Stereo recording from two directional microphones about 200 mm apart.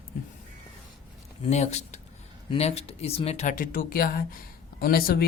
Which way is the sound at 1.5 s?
35° left (ahead or behind).